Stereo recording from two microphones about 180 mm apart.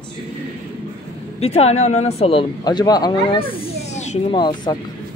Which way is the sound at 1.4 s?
35° left (ahead or behind).